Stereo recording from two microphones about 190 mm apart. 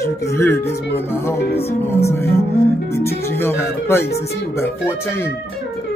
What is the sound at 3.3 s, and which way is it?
Speech, 10° left (ahead or behind).